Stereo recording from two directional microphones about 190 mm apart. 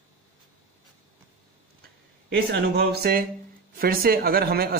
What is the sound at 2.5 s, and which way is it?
A man's voice, 55° right (ahead or behind).